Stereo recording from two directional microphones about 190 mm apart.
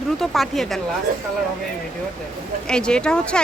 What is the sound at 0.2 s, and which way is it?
Speech, centre (ahead or behind).